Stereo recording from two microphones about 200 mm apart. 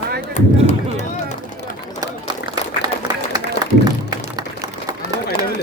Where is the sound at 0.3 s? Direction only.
35° left (ahead or behind).